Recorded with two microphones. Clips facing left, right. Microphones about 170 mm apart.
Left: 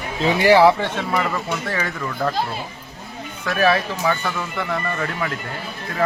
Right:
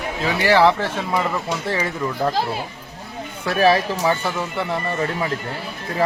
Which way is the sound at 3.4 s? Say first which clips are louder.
Right 2 dB; 30° right (ahead or behind).